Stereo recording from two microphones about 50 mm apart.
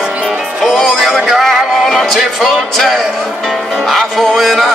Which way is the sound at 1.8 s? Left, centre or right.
Centre.